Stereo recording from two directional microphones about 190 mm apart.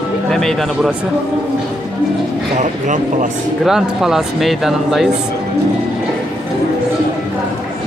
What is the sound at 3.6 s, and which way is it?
Speech, centre (ahead or behind).